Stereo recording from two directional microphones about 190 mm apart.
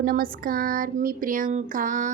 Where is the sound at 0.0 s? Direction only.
50° right (ahead or behind).